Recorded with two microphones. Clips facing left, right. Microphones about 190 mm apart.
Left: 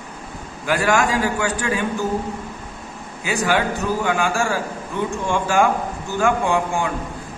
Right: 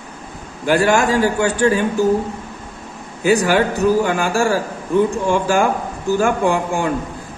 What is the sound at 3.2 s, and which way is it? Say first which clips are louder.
A man's voice: right 6 dB; 40° right (ahead or behind).